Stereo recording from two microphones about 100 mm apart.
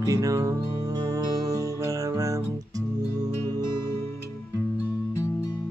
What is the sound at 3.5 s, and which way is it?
Music, 25° left (ahead or behind).